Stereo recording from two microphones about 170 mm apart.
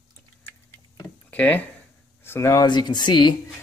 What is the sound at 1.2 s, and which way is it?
Speech, 10° left (ahead or behind).